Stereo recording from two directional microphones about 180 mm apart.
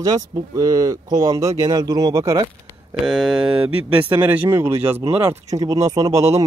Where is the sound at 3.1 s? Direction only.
Centre (ahead or behind); by 6.2 s 20° right (ahead or behind).